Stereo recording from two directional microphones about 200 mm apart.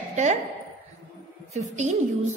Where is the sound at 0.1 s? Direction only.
35° right (ahead or behind).